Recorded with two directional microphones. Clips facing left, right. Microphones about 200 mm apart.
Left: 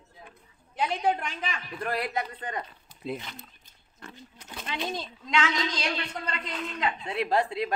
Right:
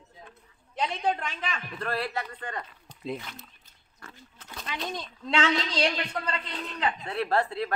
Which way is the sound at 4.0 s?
20° left (ahead or behind).